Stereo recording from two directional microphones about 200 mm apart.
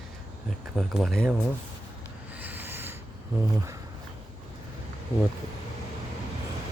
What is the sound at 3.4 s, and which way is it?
Speech, 15° right (ahead or behind).